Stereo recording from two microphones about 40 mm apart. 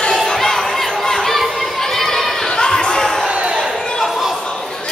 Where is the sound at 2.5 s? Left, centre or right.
Left.